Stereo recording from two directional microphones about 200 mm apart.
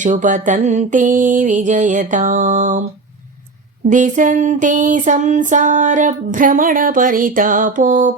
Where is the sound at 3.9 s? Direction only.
40° right (ahead or behind).